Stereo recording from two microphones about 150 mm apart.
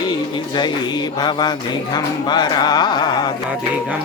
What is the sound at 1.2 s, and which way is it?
Speech, 30° left (ahead or behind).